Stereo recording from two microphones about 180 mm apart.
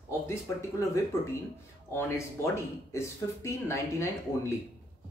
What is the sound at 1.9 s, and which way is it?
Speech, 15° left (ahead or behind).